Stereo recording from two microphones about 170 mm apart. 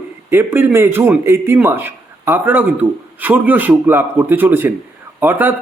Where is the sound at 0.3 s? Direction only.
15° right (ahead or behind).